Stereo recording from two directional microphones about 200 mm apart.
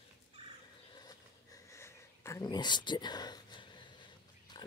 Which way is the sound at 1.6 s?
15° left (ahead or behind).